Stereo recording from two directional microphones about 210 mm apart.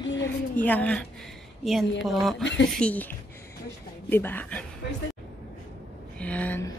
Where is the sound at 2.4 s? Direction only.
60° left (ahead or behind).